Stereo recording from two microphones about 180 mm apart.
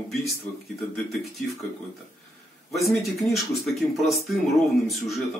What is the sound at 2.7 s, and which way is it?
Speech, centre (ahead or behind).